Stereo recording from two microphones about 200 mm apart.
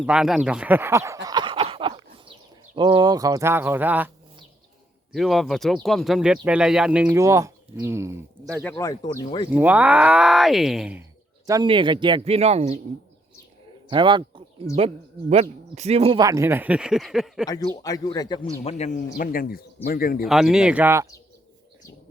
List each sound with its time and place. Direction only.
0.0 s a sound: 5° right (ahead or behind); by 2.3 s 25° right (ahead or behind)
2.7 s speech: 25° right (ahead or behind)
5.1 s speech: centre (ahead or behind)
8.6 s speech: 10° left (ahead or behind)
9.5 s speech: 10° right (ahead or behind)
11.4 s speech: 20° right (ahead or behind)
13.9 s speech: 25° right (ahead or behind); by 17.4 s centre (ahead or behind)
17.8 s speech: 20° left (ahead or behind)
18.6 s a man's voice: 35° left (ahead or behind)
20.2 s speech: 5° right (ahead or behind)